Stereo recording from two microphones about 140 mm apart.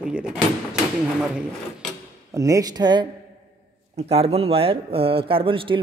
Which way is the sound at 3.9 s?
45° right (ahead or behind).